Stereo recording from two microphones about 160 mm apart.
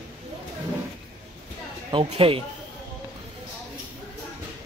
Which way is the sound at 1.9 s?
35° right (ahead or behind).